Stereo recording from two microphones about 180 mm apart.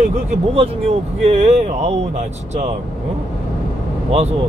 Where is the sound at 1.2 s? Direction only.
35° right (ahead or behind).